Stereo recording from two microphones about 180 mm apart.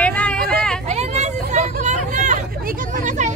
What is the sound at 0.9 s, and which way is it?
Vehicle, 40° right (ahead or behind).